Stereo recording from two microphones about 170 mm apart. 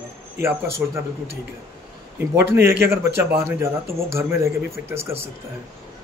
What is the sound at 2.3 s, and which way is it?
Speech, 15° right (ahead or behind).